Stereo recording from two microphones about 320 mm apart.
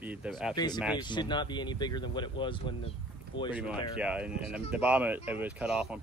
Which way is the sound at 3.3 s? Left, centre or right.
Left.